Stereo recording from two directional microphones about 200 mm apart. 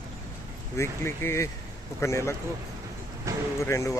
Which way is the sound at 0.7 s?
10° left (ahead or behind).